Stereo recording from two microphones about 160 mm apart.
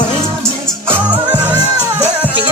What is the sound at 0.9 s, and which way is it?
Music, 10° right (ahead or behind).